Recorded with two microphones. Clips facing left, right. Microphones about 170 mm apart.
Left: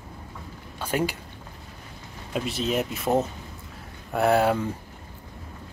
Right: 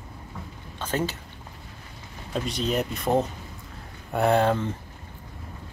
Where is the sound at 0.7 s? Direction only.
10° left (ahead or behind).